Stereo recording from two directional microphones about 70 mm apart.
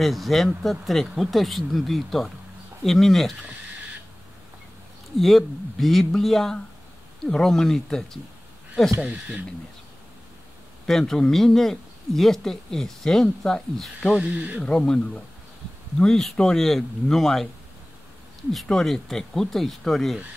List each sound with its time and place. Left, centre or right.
0.0 s speech: centre
5.1 s speech: centre
9.0 s speech: centre
10.9 s speech: centre
14.1 s speech: right
14.6 s speech: centre
18.5 s speech: centre